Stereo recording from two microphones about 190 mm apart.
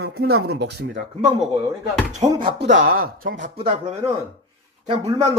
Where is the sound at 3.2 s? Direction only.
40° right (ahead or behind).